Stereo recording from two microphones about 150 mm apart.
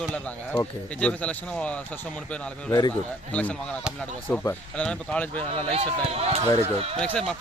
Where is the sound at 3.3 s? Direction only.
10° left (ahead or behind).